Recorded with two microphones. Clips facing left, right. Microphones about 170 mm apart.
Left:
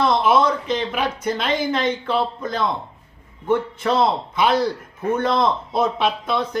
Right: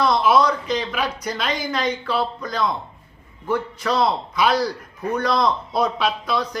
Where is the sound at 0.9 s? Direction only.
25° left (ahead or behind).